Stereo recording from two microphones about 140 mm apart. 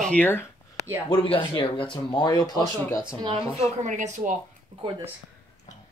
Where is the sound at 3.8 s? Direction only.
65° right (ahead or behind).